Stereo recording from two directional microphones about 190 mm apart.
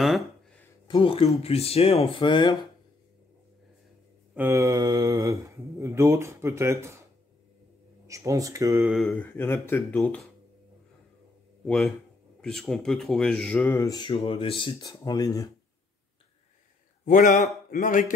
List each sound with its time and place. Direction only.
0.0 s a sound: centre (ahead or behind)
0.8 s speech: 30° left (ahead or behind)
4.4 s speech: 15° right (ahead or behind)
8.1 s speech: 15° right (ahead or behind)
8.8 s speech: centre (ahead or behind)
9.1 s speech: 10° left (ahead or behind)
11.6 s a man's voice: 5° left (ahead or behind)
17.0 s a man's voice: 45° left (ahead or behind)